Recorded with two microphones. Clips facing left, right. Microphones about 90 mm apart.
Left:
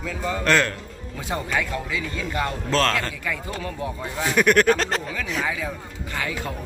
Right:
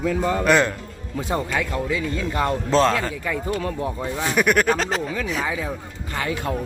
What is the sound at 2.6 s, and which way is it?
Speech, 20° right (ahead or behind).